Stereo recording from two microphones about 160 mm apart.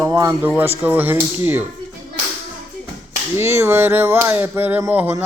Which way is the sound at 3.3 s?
15° right (ahead or behind).